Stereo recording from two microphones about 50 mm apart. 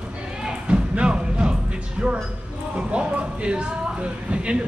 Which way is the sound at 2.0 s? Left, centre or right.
Right.